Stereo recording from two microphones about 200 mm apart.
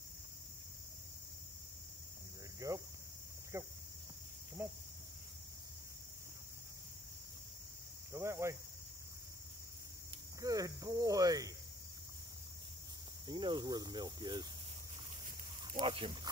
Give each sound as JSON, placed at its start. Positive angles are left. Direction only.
{"t": 2.6, "sound": "speech", "side_deg": -15}
{"t": 3.5, "sound": "cricket", "side_deg": -15}
{"t": 8.1, "sound": "cricket", "side_deg": -15}
{"t": 10.4, "sound": "cricket", "side_deg": -15}
{"t": 13.3, "sound": "cricket", "side_deg": -25}
{"t": 15.8, "sound": "snake", "side_deg": -25}